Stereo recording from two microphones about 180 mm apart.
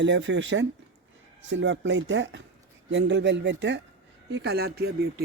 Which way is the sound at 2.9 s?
75° right (ahead or behind).